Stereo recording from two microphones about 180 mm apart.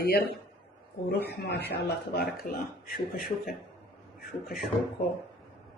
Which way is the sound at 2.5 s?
50° left (ahead or behind).